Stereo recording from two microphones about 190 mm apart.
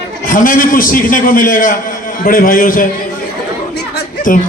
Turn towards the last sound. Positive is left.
turn(degrees=45)  # may be behind; listen again after turning